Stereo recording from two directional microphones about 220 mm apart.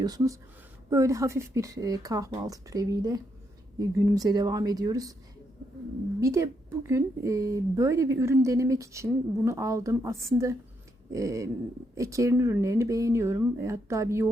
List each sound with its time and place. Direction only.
0.0 s speech: 15° right (ahead or behind)
6.1 s speech: 15° right (ahead or behind)